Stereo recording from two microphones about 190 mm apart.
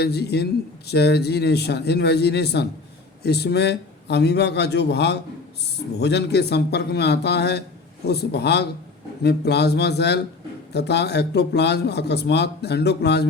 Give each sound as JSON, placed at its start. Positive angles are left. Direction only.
{"t": 0.0, "sound": "speech", "side_deg": 60}